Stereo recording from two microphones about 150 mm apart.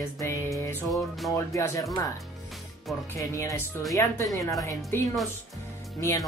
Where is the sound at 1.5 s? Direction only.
20° left (ahead or behind).